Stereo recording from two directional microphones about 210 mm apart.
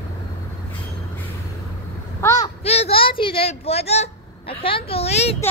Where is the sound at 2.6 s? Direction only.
30° left (ahead or behind).